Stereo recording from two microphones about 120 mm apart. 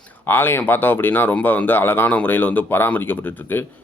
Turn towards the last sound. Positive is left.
turn(degrees=15)  # may be behind; listen again after turning